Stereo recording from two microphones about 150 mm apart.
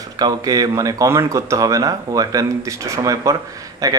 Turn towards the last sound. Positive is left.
turn(degrees=-20)  # may be behind; listen again after turning